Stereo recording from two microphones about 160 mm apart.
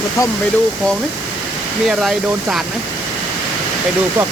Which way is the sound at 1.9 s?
5° right (ahead or behind).